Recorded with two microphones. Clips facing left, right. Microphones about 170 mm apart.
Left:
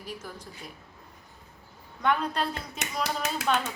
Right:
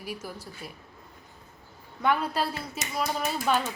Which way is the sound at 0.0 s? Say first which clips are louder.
Right 2 dB; 10° right (ahead or behind).